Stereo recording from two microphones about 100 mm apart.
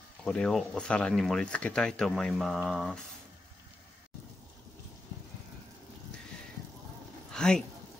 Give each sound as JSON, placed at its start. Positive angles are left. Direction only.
{"t": 0.2, "sound": "speech", "side_deg": 5}
{"t": 7.3, "sound": "speech", "side_deg": 5}